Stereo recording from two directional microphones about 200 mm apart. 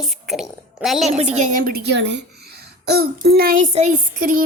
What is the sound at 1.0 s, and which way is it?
A woman's voice, 40° right (ahead or behind).